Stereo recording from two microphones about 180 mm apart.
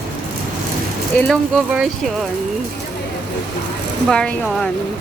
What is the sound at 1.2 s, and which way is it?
Speech, 5° left (ahead or behind).